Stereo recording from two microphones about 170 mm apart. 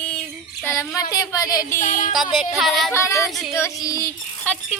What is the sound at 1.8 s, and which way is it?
Music, 50° left (ahead or behind).